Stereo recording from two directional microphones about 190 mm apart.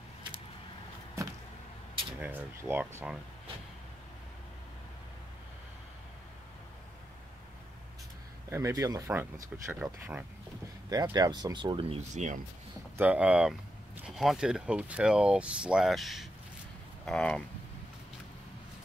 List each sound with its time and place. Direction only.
2.1 s speech: 10° right (ahead or behind)
8.5 s speech: 15° right (ahead or behind)
12.1 s speech: 40° right (ahead or behind)
12.9 s speech: 10° right (ahead or behind)